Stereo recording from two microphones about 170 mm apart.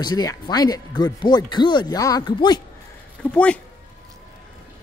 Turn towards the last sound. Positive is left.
turn(degrees=5)  # may be behind; listen again after turning